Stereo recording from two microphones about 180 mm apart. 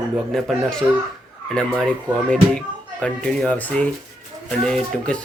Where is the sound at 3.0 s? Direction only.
5° left (ahead or behind).